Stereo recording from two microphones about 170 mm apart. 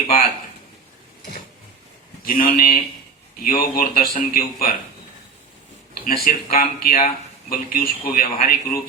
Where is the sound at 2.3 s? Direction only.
55° left (ahead or behind).